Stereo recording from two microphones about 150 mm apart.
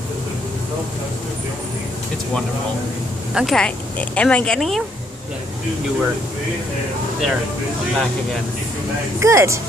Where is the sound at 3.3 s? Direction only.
Centre (ahead or behind).